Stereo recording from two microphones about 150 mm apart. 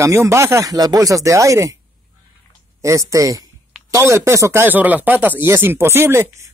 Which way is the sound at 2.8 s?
20° right (ahead or behind).